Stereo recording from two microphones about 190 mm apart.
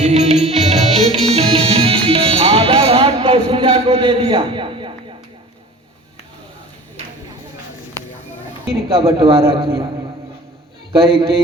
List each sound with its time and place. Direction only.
0.0 s music: 35° right (ahead or behind)
8.7 s speech: 30° right (ahead or behind)